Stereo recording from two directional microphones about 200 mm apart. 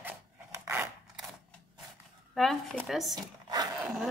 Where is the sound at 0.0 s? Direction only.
10° right (ahead or behind).